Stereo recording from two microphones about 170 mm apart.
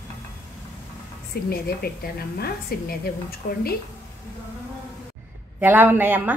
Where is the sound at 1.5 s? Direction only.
65° left (ahead or behind).